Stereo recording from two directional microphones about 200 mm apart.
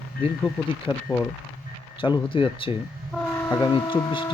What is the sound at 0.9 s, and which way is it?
Speech, 15° left (ahead or behind).